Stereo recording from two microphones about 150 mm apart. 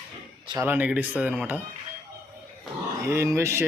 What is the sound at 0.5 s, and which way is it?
Speech, 15° right (ahead or behind).